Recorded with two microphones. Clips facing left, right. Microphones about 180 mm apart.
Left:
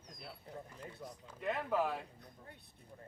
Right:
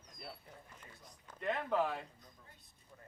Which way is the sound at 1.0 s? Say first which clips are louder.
Left 12 dB; 55° left (ahead or behind).